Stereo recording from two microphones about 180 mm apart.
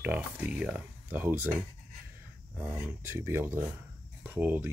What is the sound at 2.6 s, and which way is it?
Speech, 10° right (ahead or behind).